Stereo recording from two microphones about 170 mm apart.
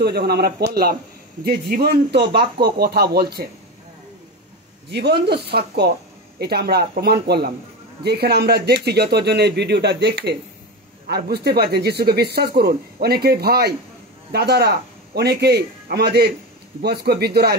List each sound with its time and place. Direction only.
0.0 s speech: 70° right (ahead or behind)
4.9 s speech: 80° right